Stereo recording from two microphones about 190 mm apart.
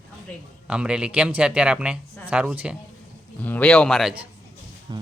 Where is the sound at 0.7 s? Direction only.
5° right (ahead or behind).